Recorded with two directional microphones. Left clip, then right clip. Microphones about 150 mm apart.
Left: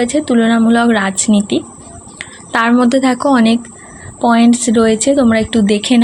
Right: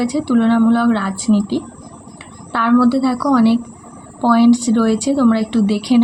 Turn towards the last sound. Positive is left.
turn(degrees=30)  # may be behind; listen again after turning